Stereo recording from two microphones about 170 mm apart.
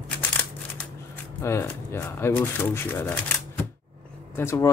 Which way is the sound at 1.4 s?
15° left (ahead or behind).